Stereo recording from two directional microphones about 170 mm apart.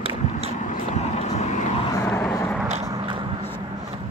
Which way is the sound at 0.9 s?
40° left (ahead or behind).